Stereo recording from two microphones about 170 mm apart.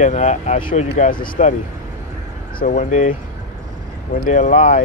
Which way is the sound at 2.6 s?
45° left (ahead or behind).